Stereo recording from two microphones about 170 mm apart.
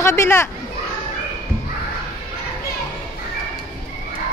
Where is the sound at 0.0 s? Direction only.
15° left (ahead or behind).